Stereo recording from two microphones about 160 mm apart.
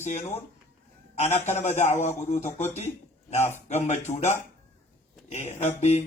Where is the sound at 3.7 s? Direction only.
45° left (ahead or behind).